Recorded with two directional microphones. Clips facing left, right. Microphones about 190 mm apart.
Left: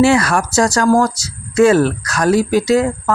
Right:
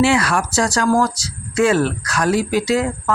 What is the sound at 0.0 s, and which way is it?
Speech, 45° left (ahead or behind).